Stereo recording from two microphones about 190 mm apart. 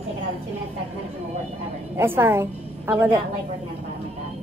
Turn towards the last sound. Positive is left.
turn(degrees=-15)  # may be behind; listen again after turning